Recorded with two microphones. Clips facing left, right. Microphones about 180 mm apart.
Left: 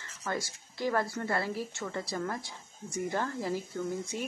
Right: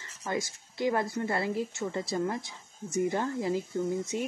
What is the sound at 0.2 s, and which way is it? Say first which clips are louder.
Speech: right 3 dB; 20° right (ahead or behind).